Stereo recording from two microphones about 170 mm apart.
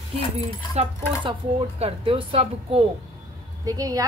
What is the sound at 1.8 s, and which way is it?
Speech, 35° right (ahead or behind).